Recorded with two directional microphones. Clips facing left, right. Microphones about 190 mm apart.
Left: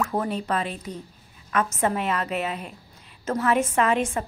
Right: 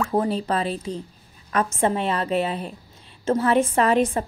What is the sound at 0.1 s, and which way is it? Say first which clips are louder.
A woman's voice: right 4 dB; 30° right (ahead or behind).